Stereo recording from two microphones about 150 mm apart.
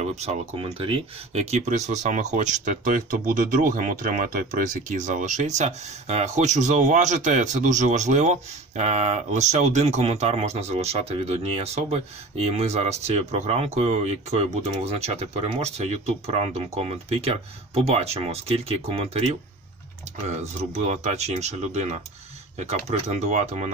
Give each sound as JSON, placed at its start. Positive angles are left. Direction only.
{"t": 0.0, "sound": "speech", "side_deg": -45}
{"t": 20.2, "sound": "speech", "side_deg": -50}